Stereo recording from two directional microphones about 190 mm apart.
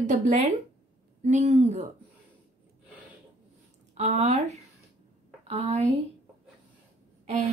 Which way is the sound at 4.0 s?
35° right (ahead or behind).